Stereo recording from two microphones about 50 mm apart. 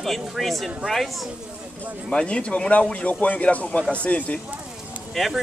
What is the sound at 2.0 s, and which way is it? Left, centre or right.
Speech, centre.